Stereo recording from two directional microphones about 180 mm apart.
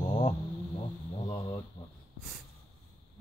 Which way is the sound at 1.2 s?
35° left (ahead or behind).